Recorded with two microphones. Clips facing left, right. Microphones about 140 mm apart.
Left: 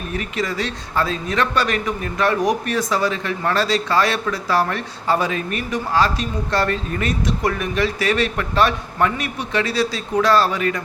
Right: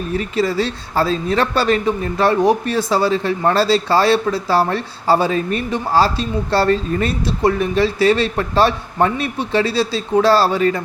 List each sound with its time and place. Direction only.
0.1 s speech: 30° right (ahead or behind)